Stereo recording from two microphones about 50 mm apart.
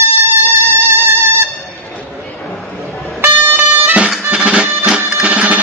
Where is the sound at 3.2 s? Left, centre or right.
Right.